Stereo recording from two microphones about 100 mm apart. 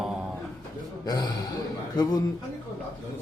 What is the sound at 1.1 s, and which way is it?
A man's voice, 40° left (ahead or behind).